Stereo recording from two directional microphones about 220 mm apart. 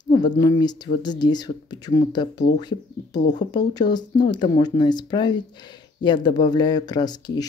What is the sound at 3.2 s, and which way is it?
Speech, 35° left (ahead or behind).